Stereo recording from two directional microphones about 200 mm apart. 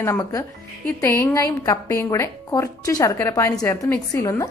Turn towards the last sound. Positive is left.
turn(degrees=15)  # may be behind; listen again after turning